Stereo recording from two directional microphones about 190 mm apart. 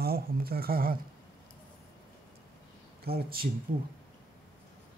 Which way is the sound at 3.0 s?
50° right (ahead or behind).